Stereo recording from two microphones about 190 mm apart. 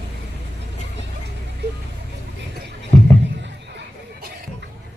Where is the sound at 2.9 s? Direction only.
15° left (ahead or behind).